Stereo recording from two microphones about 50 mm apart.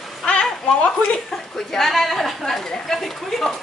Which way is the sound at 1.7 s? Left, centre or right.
Centre.